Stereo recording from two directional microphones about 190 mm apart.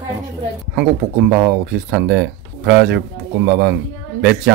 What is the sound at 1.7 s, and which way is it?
Speech, 65° right (ahead or behind).